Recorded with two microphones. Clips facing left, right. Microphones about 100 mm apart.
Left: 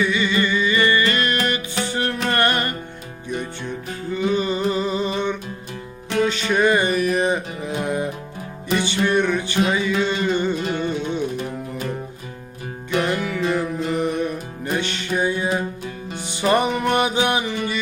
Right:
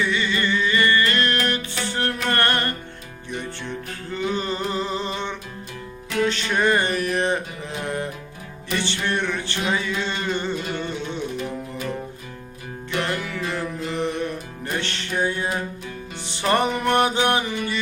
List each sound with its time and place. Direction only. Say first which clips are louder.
0.0 s music: left 3 dB; 10° left (ahead or behind)
10.6 s music: left 5 dB; 45° left (ahead or behind)
13.0 s music: left 4 dB; 15° left (ahead or behind)